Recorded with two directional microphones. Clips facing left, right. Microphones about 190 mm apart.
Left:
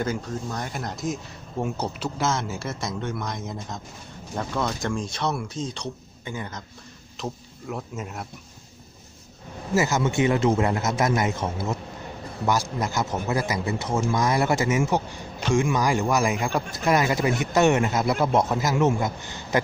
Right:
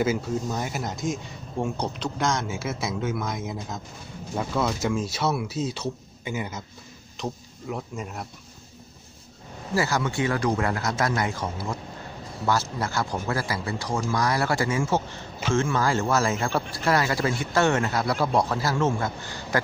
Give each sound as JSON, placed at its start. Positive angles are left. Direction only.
{"t": 0.0, "sound": "speech", "side_deg": -5}
{"t": 9.8, "sound": "speech", "side_deg": 20}